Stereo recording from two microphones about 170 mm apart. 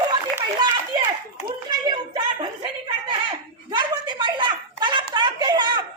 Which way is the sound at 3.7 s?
25° right (ahead or behind).